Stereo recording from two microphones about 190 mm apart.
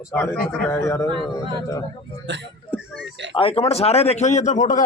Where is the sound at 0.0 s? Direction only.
15° left (ahead or behind).